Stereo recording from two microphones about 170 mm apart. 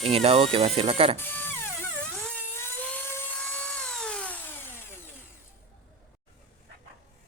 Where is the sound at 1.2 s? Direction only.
10° left (ahead or behind).